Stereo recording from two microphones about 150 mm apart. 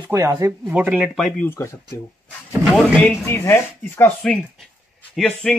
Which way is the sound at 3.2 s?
20° left (ahead or behind).